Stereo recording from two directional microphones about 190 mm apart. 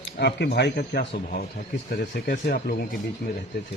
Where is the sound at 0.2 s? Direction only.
60° left (ahead or behind).